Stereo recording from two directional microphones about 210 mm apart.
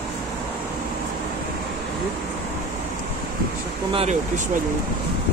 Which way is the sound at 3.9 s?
30° right (ahead or behind).